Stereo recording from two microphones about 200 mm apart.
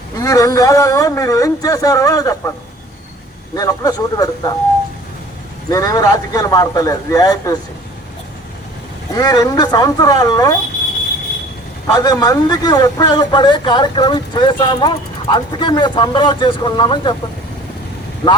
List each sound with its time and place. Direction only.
0.2 s speech: 15° left (ahead or behind)
3.5 s a man's voice: 20° left (ahead or behind)
5.7 s a man's voice: 20° left (ahead or behind)
9.1 s a man's voice: 20° left (ahead or behind)
11.9 s a man's voice: 20° left (ahead or behind)